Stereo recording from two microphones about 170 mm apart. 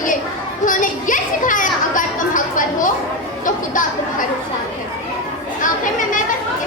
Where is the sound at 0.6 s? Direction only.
50° left (ahead or behind).